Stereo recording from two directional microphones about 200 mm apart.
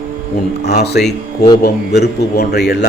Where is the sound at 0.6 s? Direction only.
55° left (ahead or behind).